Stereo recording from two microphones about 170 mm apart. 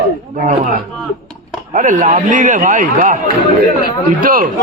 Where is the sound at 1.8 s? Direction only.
50° right (ahead or behind).